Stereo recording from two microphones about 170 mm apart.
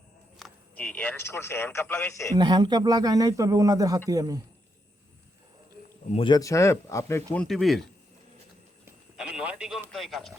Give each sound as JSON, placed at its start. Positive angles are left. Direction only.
{"t": 0.3, "sound": "speech", "side_deg": 5}
{"t": 2.4, "sound": "a man's voice", "side_deg": -25}
{"t": 6.1, "sound": "speech", "side_deg": 25}
{"t": 7.3, "sound": "speech", "side_deg": 0}
{"t": 8.8, "sound": "a sound", "side_deg": -5}
{"t": 9.9, "sound": "speech", "side_deg": 0}